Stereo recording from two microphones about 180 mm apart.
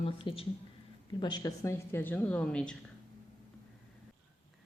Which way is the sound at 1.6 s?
15° left (ahead or behind).